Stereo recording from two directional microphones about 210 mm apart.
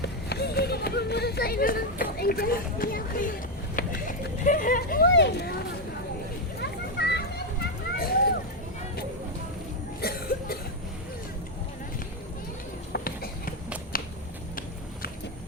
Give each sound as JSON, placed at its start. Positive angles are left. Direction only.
{"t": 0.0, "sound": "run", "side_deg": 50}
{"t": 4.4, "sound": "speech", "side_deg": 40}
{"t": 6.6, "sound": "a sound", "side_deg": 50}
{"t": 10.0, "sound": "cough", "side_deg": 45}
{"t": 12.9, "sound": "run", "side_deg": 45}
{"t": 13.9, "sound": "a sound", "side_deg": 40}